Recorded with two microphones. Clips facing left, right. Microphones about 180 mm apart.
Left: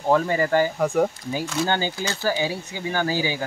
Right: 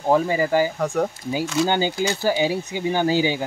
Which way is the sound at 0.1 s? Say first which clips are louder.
Right 1 dB; 10° right (ahead or behind).